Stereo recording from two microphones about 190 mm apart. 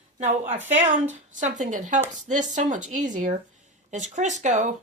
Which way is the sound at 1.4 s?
40° right (ahead or behind).